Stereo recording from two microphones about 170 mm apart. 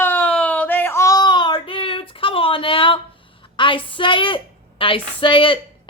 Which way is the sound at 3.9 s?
30° left (ahead or behind).